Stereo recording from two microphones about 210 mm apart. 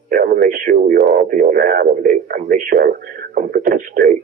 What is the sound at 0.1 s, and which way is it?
Speech, 40° right (ahead or behind).